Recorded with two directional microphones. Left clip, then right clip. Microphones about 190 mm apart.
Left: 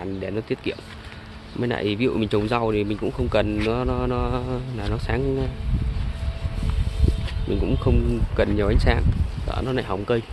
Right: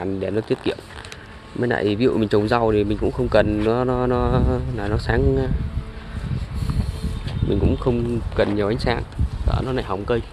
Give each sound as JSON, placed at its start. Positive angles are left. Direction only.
{"t": 0.0, "sound": "speech", "side_deg": -30}
{"t": 7.4, "sound": "speech", "side_deg": -15}